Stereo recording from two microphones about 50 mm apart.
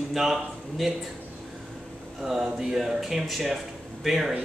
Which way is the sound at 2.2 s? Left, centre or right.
Centre.